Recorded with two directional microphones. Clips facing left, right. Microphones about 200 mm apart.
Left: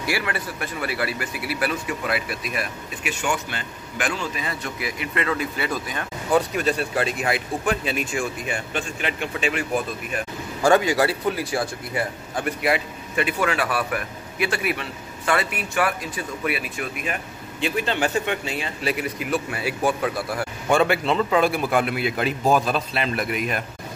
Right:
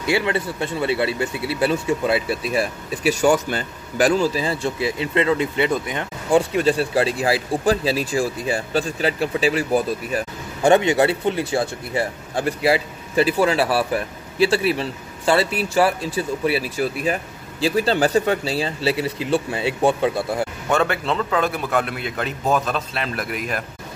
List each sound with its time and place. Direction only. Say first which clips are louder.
0.0 s speech: right 6 dB; 25° right (ahead or behind)
10.6 s speech: right 3 dB; 25° right (ahead or behind)
20.7 s a man's voice: left 2 dB; 10° left (ahead or behind)